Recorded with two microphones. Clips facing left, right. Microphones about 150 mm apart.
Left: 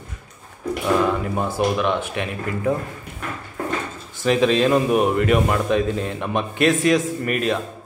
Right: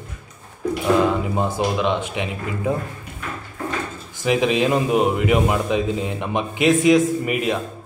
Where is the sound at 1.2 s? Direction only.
20° right (ahead or behind).